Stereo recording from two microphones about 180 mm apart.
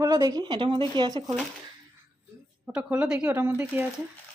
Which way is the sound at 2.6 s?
5° right (ahead or behind).